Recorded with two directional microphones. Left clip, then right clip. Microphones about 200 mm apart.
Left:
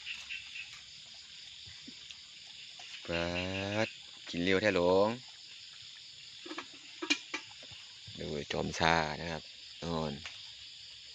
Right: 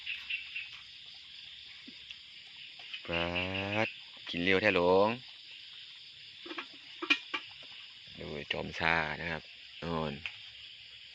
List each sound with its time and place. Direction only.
3.1 s speech: 5° left (ahead or behind)
6.5 s tick-tock: centre (ahead or behind)
8.2 s speech: 25° left (ahead or behind); by 10.2 s centre (ahead or behind)